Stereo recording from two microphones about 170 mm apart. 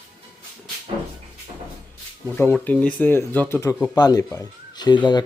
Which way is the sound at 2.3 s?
10° left (ahead or behind).